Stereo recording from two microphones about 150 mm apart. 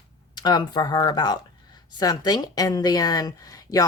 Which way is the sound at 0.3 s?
30° left (ahead or behind).